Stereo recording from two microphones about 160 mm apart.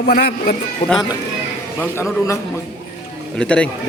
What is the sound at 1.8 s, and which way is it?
Speech, 15° left (ahead or behind).